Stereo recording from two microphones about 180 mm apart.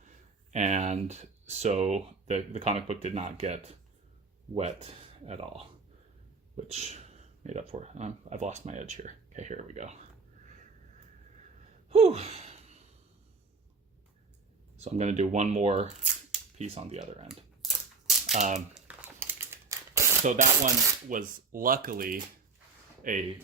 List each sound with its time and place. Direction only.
0.5 s speech: 40° right (ahead or behind)
11.9 s gasp: 35° right (ahead or behind)
14.8 s speech: 40° right (ahead or behind)
17.2 s a sound: centre (ahead or behind)
18.3 s speech: 40° right (ahead or behind)
18.7 s crumpling: 10° right (ahead or behind)
20.2 s speech: 45° right (ahead or behind)